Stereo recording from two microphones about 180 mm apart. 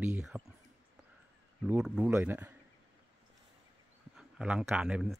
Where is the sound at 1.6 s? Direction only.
5° right (ahead or behind).